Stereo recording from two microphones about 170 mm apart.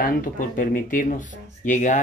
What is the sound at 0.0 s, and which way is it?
Speech, 55° left (ahead or behind).